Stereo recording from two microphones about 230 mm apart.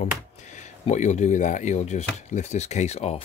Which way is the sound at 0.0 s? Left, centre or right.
Left.